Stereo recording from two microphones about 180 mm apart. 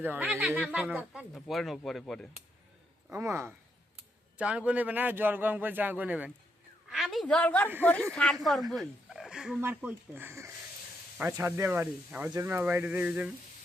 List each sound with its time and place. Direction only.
0.0 s speech: 10° right (ahead or behind)
3.1 s a man's voice: 15° right (ahead or behind)